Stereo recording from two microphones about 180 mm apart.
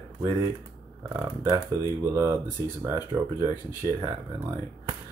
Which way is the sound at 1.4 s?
15° right (ahead or behind).